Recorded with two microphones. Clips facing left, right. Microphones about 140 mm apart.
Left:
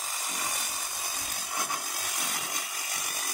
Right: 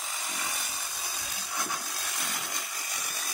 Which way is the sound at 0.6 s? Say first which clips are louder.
Left 1 dB; 50° left (ahead or behind).